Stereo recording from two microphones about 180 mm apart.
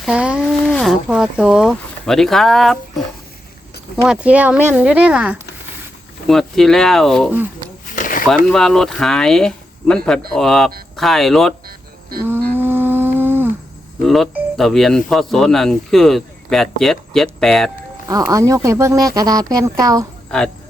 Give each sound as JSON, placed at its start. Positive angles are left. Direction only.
{"t": 0.0, "sound": "a sound", "side_deg": -5}
{"t": 0.6, "sound": "speech", "side_deg": 5}
{"t": 4.0, "sound": "speech", "side_deg": -5}
{"t": 7.9, "sound": "a sound", "side_deg": 45}
{"t": 8.4, "sound": "speech", "side_deg": 5}
{"t": 12.5, "sound": "music", "side_deg": -10}
{"t": 14.0, "sound": "speech", "side_deg": 0}
{"t": 18.1, "sound": "a woman's voice", "side_deg": -20}